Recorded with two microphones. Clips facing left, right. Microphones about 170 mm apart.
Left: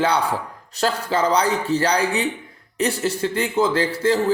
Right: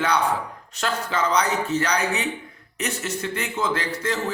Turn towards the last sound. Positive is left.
turn(degrees=30)  # may be behind; listen again after turning